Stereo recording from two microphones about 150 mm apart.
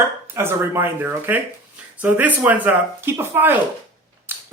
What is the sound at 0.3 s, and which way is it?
A man's voice, 15° right (ahead or behind).